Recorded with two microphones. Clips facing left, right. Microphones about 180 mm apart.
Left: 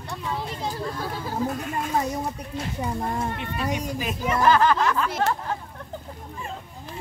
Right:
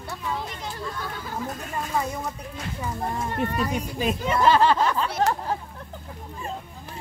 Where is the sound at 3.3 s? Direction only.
40° right (ahead or behind).